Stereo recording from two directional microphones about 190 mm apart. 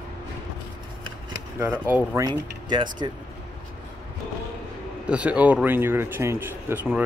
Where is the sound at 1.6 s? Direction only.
10° right (ahead or behind).